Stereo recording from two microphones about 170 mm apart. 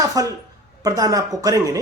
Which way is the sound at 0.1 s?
20° right (ahead or behind).